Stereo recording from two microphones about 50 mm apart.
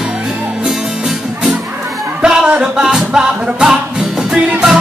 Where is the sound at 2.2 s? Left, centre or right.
Centre.